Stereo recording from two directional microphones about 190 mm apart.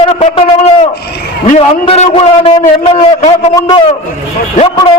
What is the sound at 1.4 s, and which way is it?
A man's voice, 35° left (ahead or behind).